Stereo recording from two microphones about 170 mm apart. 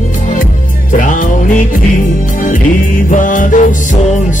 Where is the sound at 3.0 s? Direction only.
50° left (ahead or behind).